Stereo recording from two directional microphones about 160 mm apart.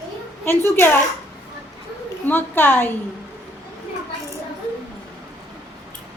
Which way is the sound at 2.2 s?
10° left (ahead or behind).